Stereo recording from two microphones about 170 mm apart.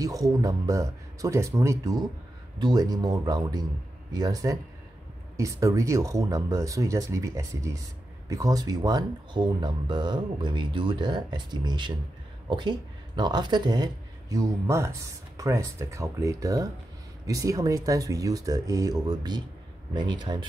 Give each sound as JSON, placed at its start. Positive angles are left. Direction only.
{"t": 0.0, "sound": "speech", "side_deg": -20}